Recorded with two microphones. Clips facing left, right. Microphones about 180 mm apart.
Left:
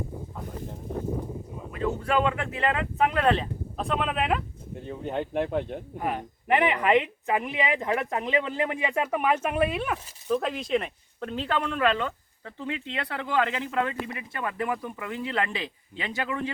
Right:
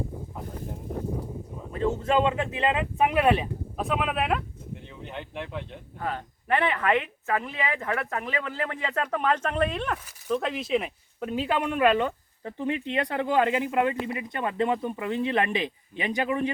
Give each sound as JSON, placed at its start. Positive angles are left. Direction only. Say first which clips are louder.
{"t": 1.7, "sound": "speech", "louder": "right 2 dB", "side_deg": -30}
{"t": 4.8, "sound": "speech", "louder": "left 12 dB", "side_deg": 45}
{"t": 6.0, "sound": "speech", "louder": "left 1 dB", "side_deg": 15}